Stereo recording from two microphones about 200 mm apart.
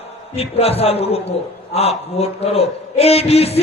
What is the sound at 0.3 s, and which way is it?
A man's voice, 30° left (ahead or behind).